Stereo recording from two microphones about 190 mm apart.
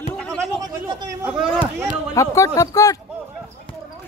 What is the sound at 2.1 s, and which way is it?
Speech, 15° left (ahead or behind).